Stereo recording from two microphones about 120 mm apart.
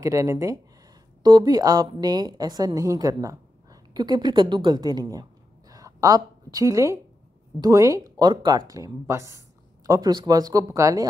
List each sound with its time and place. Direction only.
0.0 s a woman's voice: 25° right (ahead or behind)